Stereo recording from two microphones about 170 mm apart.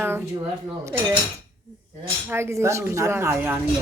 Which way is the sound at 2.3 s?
15° right (ahead or behind).